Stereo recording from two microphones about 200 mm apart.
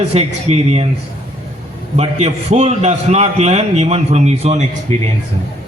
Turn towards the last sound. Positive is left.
turn(degrees=-30)  # may be behind; listen again after turning